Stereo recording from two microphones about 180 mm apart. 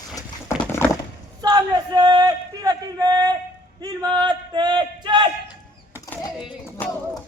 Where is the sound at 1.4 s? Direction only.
25° right (ahead or behind).